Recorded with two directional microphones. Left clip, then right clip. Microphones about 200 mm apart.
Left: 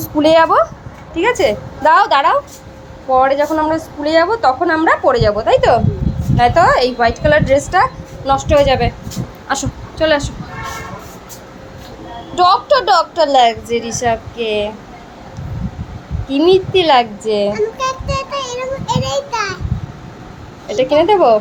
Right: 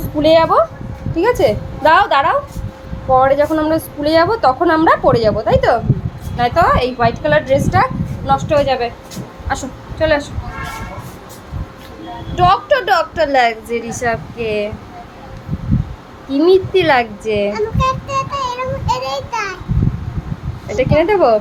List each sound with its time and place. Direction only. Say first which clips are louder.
0.2 s a woman's voice: left 1 dB; 10° left (ahead or behind)
12.4 s a woman's voice: left 1 dB; 20° right (ahead or behind)
13.1 s a woman's voice: left 2 dB; 5° left (ahead or behind)
16.3 s a child's voice: even; centre (ahead or behind)
20.7 s a woman's voice: left 2 dB; 5° left (ahead or behind)